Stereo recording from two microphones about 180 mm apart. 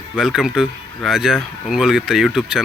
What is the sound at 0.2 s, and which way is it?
Speech, 5° right (ahead or behind).